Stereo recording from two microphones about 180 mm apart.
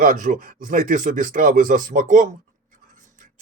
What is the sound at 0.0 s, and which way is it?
Speech, 50° right (ahead or behind).